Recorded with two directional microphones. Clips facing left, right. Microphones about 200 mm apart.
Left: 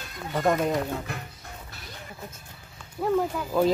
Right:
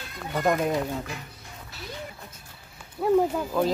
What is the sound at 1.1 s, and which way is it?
Speech, 60° left (ahead or behind).